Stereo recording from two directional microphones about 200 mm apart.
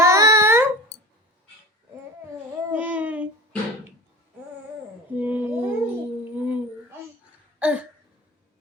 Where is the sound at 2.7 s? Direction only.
10° right (ahead or behind).